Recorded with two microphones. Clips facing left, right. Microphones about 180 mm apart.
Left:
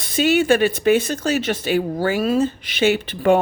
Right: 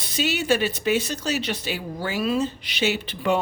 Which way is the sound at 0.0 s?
50° left (ahead or behind).